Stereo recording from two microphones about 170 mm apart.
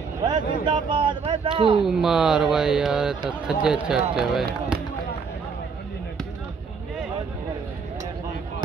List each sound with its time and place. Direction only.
0.2 s speech: 25° right (ahead or behind)
1.8 s speech: centre (ahead or behind)